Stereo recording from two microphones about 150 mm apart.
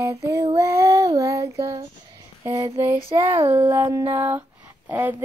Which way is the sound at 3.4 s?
30° right (ahead or behind).